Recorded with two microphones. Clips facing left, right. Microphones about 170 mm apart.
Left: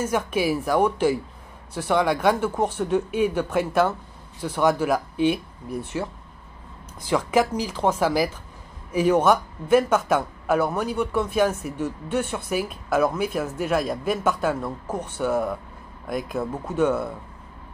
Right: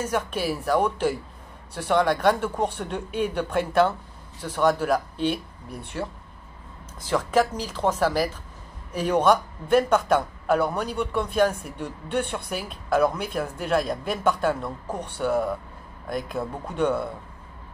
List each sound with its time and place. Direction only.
0.0 s speech: 10° left (ahead or behind)
7.1 s speech: 10° left (ahead or behind)